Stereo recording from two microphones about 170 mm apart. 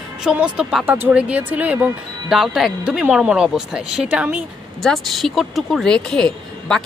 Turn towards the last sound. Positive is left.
turn(degrees=5)  # may be behind; listen again after turning